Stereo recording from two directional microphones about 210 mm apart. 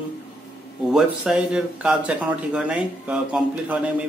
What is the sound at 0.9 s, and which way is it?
Speech, centre (ahead or behind).